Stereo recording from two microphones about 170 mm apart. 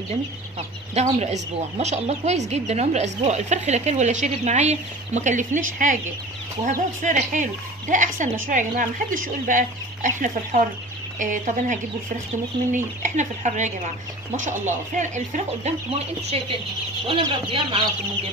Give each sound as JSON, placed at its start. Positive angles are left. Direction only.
{"t": 0.1, "sound": "a woman's voice", "side_deg": -40}
{"t": 15.0, "sound": "speech", "side_deg": -45}